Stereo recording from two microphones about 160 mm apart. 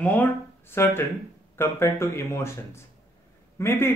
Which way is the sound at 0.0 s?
10° left (ahead or behind).